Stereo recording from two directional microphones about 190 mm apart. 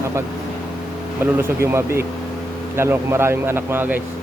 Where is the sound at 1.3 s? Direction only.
10° right (ahead or behind).